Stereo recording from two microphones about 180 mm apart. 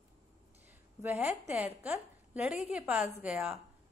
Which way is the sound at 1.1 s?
10° right (ahead or behind).